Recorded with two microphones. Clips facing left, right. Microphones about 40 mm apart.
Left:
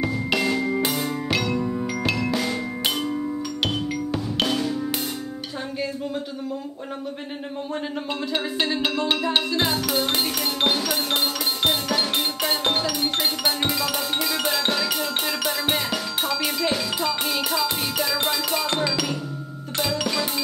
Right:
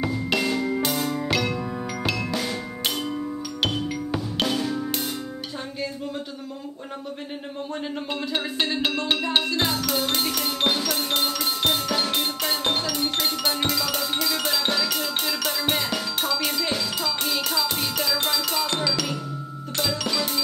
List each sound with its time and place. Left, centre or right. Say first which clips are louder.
0.1 s music: left 1 dB; centre
3.0 s music: left 2 dB; centre
3.6 s music: right 1 dB; centre
8.3 s music: left 2 dB; centre
17.5 s music: left 1 dB; centre